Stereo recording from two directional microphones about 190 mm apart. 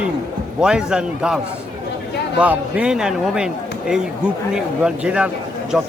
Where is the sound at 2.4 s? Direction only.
5° right (ahead or behind).